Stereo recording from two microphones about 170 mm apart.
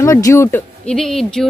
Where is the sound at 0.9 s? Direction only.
5° left (ahead or behind).